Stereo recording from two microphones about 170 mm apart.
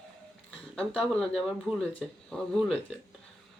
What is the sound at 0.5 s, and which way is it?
Speech, 5° left (ahead or behind).